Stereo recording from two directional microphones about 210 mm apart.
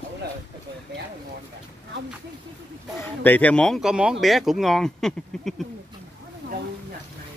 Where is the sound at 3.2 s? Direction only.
10° left (ahead or behind).